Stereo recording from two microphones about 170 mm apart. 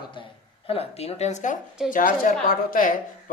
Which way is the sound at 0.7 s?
35° left (ahead or behind).